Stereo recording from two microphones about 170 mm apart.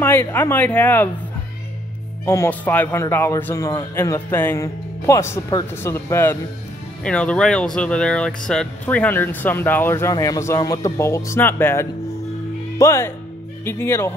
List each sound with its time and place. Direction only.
0.0 s speech: 15° left (ahead or behind)
2.2 s speech: 15° left (ahead or behind)